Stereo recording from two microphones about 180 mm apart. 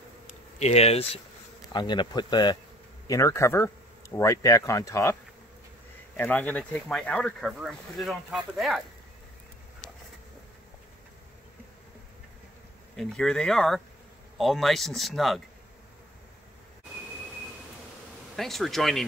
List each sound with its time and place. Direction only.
0.6 s speech: 35° left (ahead or behind)
1.7 s speech: 25° left (ahead or behind)
6.1 s speech: 10° left (ahead or behind)
12.9 s speech: centre (ahead or behind)
18.3 s speech: centre (ahead or behind)